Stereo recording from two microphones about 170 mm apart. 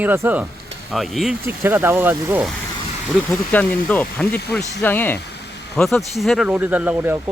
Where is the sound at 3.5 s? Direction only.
10° left (ahead or behind).